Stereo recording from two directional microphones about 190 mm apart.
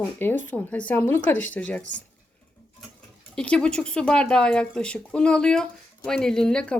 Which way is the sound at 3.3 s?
5° left (ahead or behind).